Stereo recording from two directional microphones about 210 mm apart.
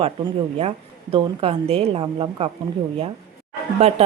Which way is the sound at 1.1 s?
25° right (ahead or behind).